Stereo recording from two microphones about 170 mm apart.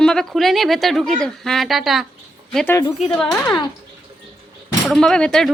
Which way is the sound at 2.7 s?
20° left (ahead or behind).